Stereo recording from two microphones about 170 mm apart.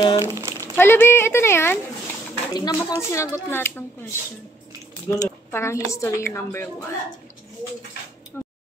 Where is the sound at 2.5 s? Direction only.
25° left (ahead or behind).